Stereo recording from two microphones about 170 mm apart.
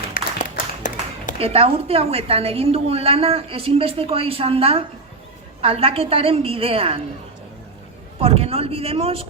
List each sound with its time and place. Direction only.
0.1 s a sound: 55° left (ahead or behind)
1.4 s a woman's voice: 35° right (ahead or behind)
8.2 s a woman's voice: 35° right (ahead or behind)